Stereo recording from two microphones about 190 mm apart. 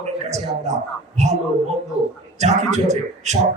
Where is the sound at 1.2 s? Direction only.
35° right (ahead or behind).